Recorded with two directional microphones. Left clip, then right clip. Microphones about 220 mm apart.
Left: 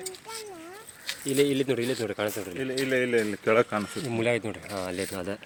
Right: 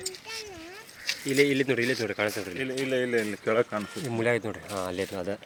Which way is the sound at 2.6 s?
30° left (ahead or behind).